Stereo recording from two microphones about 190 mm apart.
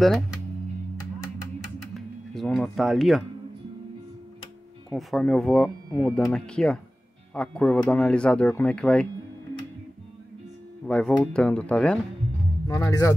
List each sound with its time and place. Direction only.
2.0 s speech: centre (ahead or behind)
4.9 s speech: 5° left (ahead or behind)
10.9 s speech: 5° left (ahead or behind)
12.6 s speech: 15° left (ahead or behind)